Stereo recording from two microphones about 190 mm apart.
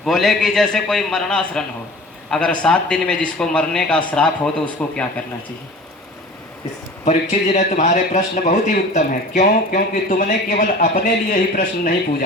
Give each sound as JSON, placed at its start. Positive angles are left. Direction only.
{"t": 0.0, "sound": "a man's voice", "side_deg": 0}
{"t": 7.0, "sound": "a man's voice", "side_deg": 40}